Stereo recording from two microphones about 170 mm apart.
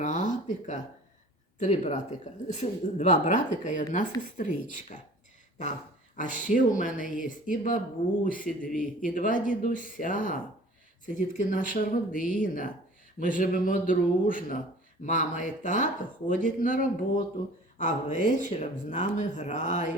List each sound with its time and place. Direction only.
0.0 s speech: 45° left (ahead or behind)
6.1 s speech: 50° left (ahead or behind)